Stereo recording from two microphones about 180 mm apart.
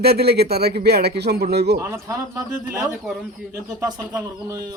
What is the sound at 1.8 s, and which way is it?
Speech, 15° right (ahead or behind).